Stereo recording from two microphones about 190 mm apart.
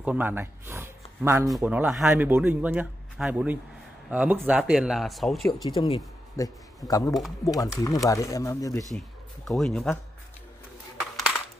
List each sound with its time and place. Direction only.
0.0 s speech: 10° right (ahead or behind)
5.6 s speech: 30° left (ahead or behind)
6.4 s speech: 15° left (ahead or behind)
8.9 s speech: centre (ahead or behind)